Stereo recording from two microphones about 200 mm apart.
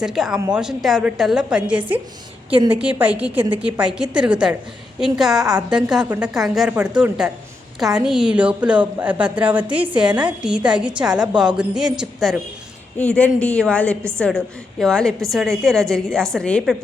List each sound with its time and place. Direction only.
0.0 s a woman's voice: centre (ahead or behind)
2.5 s a woman's voice: 25° right (ahead or behind)
2.8 s a woman's voice: 5° right (ahead or behind)